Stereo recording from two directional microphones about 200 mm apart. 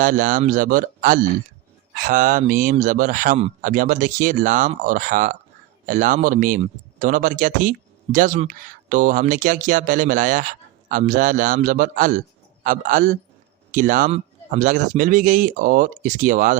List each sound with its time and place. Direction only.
0.0 s speech: 40° right (ahead or behind)